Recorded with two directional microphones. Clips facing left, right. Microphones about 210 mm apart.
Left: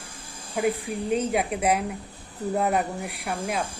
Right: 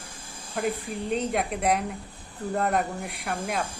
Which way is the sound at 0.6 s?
5° left (ahead or behind).